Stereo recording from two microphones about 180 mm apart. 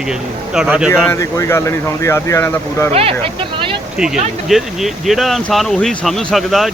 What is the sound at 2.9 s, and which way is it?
Speech, 35° right (ahead or behind).